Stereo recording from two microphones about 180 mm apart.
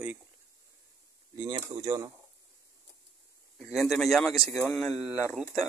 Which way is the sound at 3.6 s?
Centre (ahead or behind).